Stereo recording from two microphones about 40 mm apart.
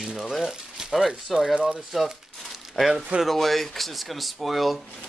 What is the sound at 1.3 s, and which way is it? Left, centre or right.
Speech, centre.